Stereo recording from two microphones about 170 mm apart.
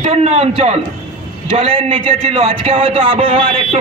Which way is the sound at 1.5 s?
35° right (ahead or behind).